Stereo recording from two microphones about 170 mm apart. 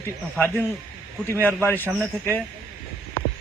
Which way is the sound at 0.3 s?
10° left (ahead or behind).